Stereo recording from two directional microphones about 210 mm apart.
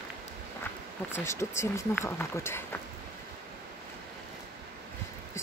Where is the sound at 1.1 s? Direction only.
15° left (ahead or behind).